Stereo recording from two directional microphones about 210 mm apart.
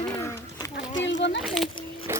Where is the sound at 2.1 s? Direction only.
10° right (ahead or behind).